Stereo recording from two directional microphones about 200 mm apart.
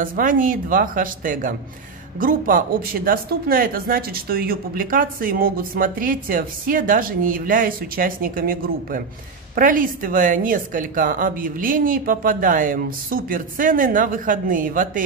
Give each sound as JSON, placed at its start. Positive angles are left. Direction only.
{"t": 0.0, "sound": "speech", "side_deg": -45}